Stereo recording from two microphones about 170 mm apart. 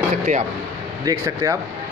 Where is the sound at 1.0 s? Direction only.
20° right (ahead or behind).